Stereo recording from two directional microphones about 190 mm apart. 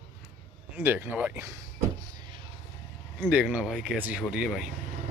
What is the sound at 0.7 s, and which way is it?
Speech, 10° right (ahead or behind).